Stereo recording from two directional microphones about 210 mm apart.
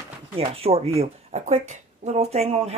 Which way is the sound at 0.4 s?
30° right (ahead or behind).